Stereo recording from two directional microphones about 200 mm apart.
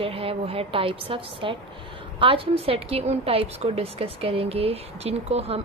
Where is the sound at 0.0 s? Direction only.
30° right (ahead or behind).